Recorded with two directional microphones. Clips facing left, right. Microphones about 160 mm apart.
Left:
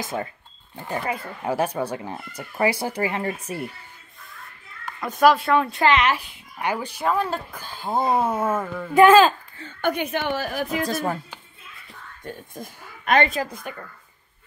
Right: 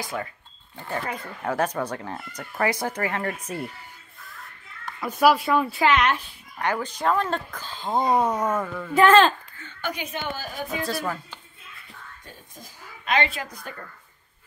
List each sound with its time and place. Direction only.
0.0 s a woman's voice: 25° left (ahead or behind)
5.0 s speech: 10° right (ahead or behind)
6.1 s speech: 10° left (ahead or behind)
9.8 s a woman's voice: 55° left (ahead or behind); by 10.8 s 75° left (ahead or behind)
10.8 s speech: 45° left (ahead or behind)
12.3 s speech: 55° left (ahead or behind)
13.5 s a woman's voice: 20° left (ahead or behind)